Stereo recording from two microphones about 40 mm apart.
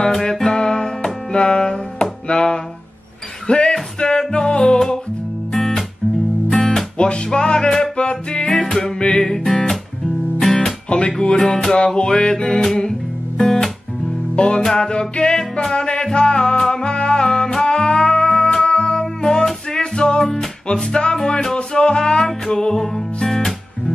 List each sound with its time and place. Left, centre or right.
0.0 s music: centre
6.5 s music: centre
7.0 s music: left
10.9 s music: left
11.1 s music: centre
14.3 s music: left
14.6 s music: centre
14.9 s music: left; by 23.5 s centre